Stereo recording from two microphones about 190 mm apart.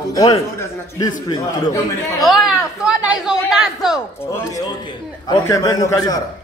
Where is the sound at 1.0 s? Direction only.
20° left (ahead or behind).